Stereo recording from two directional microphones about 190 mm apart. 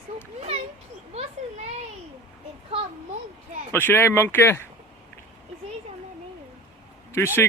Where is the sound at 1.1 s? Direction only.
35° right (ahead or behind).